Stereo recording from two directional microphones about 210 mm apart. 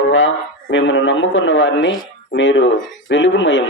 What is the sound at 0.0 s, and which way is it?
A man's voice, 70° left (ahead or behind).